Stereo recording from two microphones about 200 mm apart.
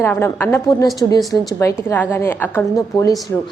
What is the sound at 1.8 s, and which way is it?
A woman's voice, 10° left (ahead or behind).